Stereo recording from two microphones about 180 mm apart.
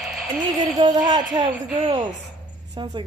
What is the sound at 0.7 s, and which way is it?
Speech, 25° right (ahead or behind).